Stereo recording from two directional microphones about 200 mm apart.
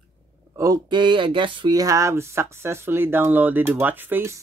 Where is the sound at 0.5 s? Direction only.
15° right (ahead or behind).